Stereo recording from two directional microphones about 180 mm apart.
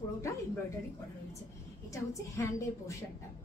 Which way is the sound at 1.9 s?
15° left (ahead or behind).